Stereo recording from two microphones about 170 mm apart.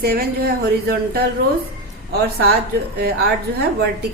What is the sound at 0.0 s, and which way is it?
A woman's voice, 65° right (ahead or behind).